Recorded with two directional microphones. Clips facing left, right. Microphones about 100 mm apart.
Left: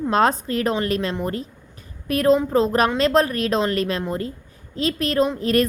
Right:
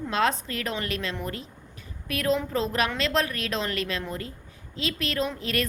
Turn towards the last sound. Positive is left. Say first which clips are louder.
# left 9 dB
turn(degrees=40)  # may be behind; listen again after turning